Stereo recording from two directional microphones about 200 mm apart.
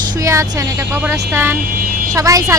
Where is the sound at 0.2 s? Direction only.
15° right (ahead or behind).